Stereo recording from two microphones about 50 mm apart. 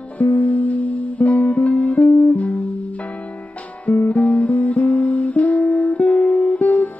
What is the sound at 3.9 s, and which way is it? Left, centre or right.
Music, left.